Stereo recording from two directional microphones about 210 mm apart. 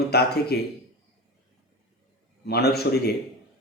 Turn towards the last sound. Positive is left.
turn(degrees=50)  # may be behind; listen again after turning